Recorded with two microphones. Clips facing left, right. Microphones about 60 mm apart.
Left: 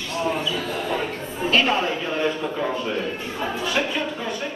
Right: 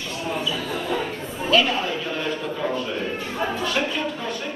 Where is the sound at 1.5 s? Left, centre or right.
Left.